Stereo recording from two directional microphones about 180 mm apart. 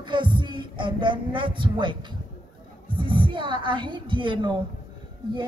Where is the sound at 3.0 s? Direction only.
30° right (ahead or behind).